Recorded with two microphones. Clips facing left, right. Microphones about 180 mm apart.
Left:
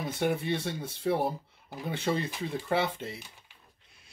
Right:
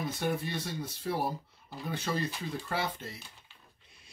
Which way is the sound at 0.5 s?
25° left (ahead or behind).